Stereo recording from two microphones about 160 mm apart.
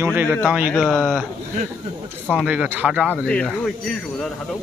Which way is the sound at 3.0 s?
5° left (ahead or behind).